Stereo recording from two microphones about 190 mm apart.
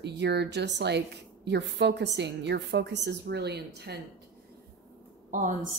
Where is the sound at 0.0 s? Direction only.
60° right (ahead or behind).